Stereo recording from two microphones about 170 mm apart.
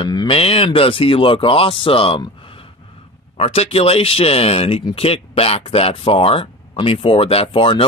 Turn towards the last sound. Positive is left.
turn(degrees=30)  # may be behind; listen again after turning